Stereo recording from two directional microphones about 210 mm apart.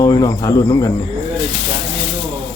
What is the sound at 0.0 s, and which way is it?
Speech, 15° left (ahead or behind).